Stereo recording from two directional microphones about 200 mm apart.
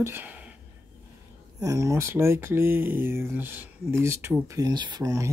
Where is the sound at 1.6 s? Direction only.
15° right (ahead or behind).